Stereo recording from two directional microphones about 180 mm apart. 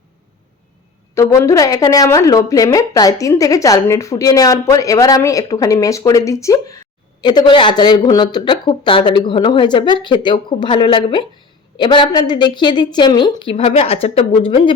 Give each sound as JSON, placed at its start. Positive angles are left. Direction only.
{"t": 1.1, "sound": "a woman's voice", "side_deg": 15}